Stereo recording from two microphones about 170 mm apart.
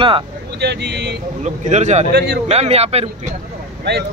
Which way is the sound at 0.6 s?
80° right.